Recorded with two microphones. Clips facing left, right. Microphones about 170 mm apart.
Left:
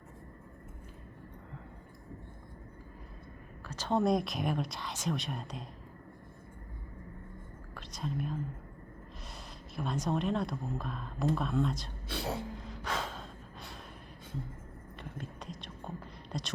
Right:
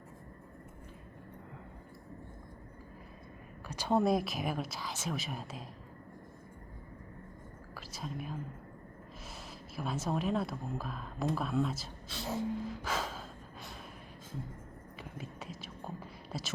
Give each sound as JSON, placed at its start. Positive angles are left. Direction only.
{"t": 3.7, "sound": "speech", "side_deg": -10}
{"t": 7.8, "sound": "whispering", "side_deg": -5}
{"t": 9.7, "sound": "speech", "side_deg": -5}
{"t": 12.0, "sound": "speech", "side_deg": 60}
{"t": 12.8, "sound": "gasp", "side_deg": 0}
{"t": 14.9, "sound": "whispering", "side_deg": -5}
{"t": 16.3, "sound": "a sound", "side_deg": -5}